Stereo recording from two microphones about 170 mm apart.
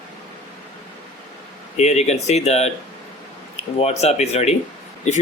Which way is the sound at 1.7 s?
40° left (ahead or behind).